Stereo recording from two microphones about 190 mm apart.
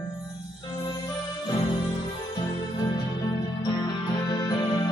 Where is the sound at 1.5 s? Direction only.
20° left (ahead or behind).